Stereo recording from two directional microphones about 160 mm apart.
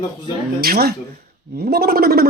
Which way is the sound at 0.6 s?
70° right (ahead or behind).